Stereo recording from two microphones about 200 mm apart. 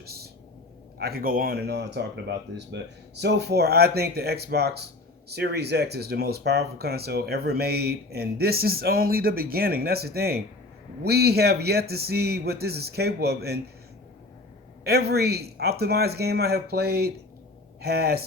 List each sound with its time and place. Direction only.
0.0 s a sound: 50° right (ahead or behind)
0.9 s speech: 50° right (ahead or behind)
14.8 s speech: 55° right (ahead or behind)